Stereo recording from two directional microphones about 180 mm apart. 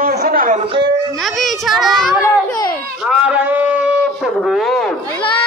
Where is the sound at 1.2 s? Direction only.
Centre (ahead or behind).